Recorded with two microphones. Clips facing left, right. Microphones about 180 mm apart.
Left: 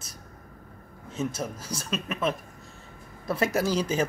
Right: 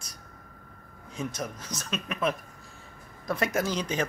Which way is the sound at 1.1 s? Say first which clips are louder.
Left 3 dB; 5° left (ahead or behind).